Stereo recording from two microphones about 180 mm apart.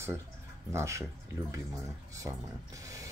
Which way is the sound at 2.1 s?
20° right (ahead or behind).